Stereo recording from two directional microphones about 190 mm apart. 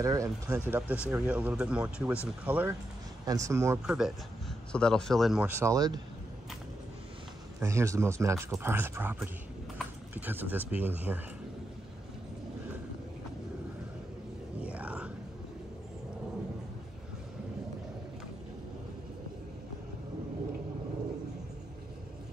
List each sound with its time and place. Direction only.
0.0 s speech: 15° right (ahead or behind)
3.8 s speech: 5° right (ahead or behind)
7.6 s speech: 15° right (ahead or behind)
14.6 s a sound: 5° right (ahead or behind)